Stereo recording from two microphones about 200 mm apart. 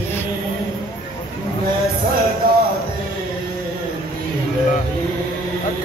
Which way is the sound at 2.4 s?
45° right (ahead or behind).